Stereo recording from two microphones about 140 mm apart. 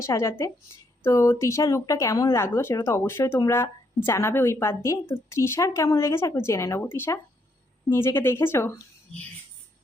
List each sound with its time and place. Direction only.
0.0 s speech: 20° left (ahead or behind)